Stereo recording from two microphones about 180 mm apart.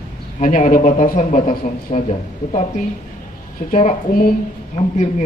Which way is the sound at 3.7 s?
45° left (ahead or behind).